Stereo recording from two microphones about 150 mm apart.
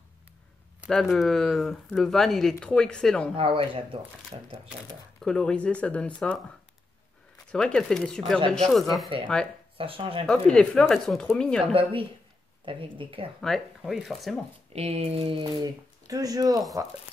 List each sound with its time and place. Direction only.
0.8 s speech: 5° left (ahead or behind)
3.3 s speech: 35° right (ahead or behind)
5.2 s speech: 5° left (ahead or behind)
7.5 s speech: 5° left (ahead or behind)
9.8 s speech: 35° right (ahead or behind)
10.2 s speech: 5° left (ahead or behind)
11.6 s speech: 35° right (ahead or behind)
13.4 s speech: centre (ahead or behind)
14.7 s speech: 45° right (ahead or behind); by 16.6 s 25° right (ahead or behind)